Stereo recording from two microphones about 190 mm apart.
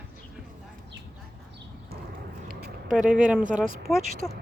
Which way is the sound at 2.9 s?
5° right (ahead or behind).